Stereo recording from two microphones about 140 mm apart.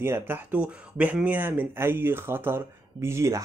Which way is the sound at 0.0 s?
15° right (ahead or behind).